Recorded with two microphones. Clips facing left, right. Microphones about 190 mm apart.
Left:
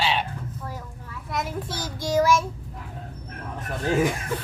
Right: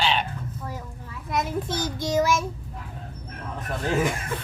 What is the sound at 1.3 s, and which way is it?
A child's voice, 20° right (ahead or behind).